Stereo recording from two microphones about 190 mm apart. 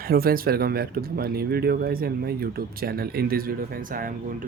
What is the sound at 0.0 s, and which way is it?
Speech, 50° right (ahead or behind).